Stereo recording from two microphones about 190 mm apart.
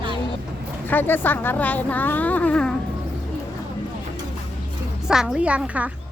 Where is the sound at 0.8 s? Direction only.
10° left (ahead or behind).